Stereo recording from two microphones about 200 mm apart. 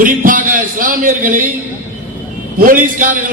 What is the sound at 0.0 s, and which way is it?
Music, 40° right (ahead or behind).